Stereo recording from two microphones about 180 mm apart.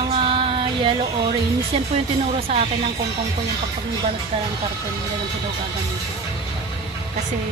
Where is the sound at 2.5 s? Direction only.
35° right (ahead or behind).